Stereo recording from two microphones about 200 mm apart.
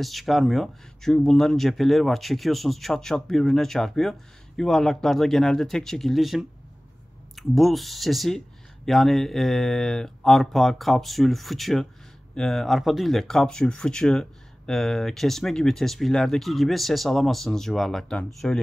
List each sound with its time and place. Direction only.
0.0 s speech: centre (ahead or behind)